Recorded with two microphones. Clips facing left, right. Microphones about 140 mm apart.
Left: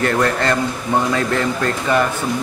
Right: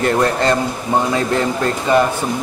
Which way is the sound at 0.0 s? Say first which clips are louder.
Right 2 dB; 20° right (ahead or behind).